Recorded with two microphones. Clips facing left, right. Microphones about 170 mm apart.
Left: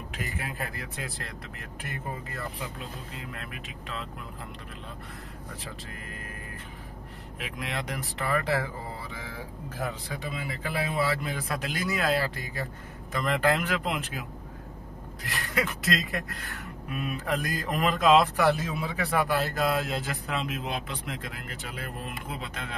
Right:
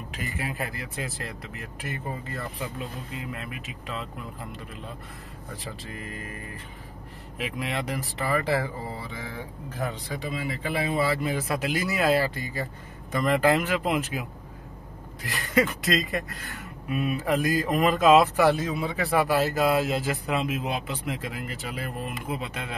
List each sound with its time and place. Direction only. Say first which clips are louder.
0.1 s speech: right 3 dB; centre (ahead or behind)
5.6 s speech: right 4 dB; centre (ahead or behind)
7.3 s speech: right 4 dB; 5° right (ahead or behind)
15.2 s speech: right 6 dB; centre (ahead or behind)